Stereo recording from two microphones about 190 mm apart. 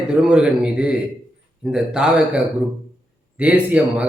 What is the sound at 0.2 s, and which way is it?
Speech, 5° right (ahead or behind).